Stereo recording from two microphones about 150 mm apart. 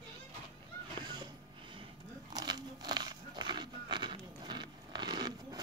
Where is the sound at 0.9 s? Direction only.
30° right (ahead or behind).